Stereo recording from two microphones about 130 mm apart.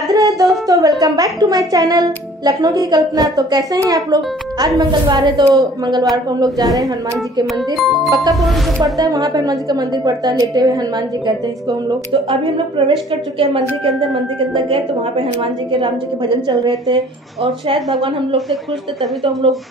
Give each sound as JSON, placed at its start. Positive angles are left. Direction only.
{"t": 0.1, "sound": "a woman's voice", "side_deg": -25}
{"t": 7.5, "sound": "speech", "side_deg": 0}
{"t": 8.9, "sound": "a woman's voice", "side_deg": -30}
{"t": 12.1, "sound": "a woman's voice", "side_deg": -45}
{"t": 17.7, "sound": "speech", "side_deg": 0}
{"t": 19.4, "sound": "a woman's voice", "side_deg": -40}